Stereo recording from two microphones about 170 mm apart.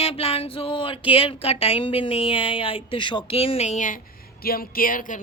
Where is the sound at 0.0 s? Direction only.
35° left (ahead or behind); by 4.0 s 50° left (ahead or behind).